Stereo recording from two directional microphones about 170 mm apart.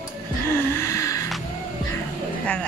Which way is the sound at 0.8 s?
20° left (ahead or behind).